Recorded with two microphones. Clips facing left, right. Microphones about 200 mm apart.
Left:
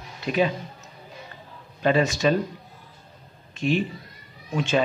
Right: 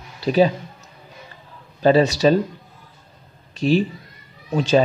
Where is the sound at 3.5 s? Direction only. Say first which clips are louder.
Right 5 dB; 35° right (ahead or behind).